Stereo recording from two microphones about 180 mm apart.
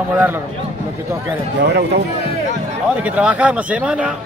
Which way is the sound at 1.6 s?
65° right (ahead or behind).